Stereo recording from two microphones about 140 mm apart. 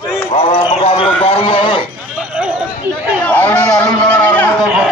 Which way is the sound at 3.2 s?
10° left (ahead or behind).